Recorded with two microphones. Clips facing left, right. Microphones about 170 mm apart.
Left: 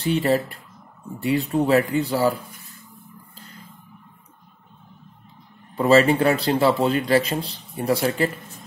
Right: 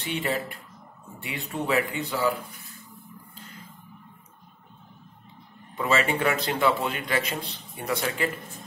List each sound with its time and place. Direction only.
0.0 s speech: 40° left (ahead or behind)
5.8 s speech: 35° left (ahead or behind)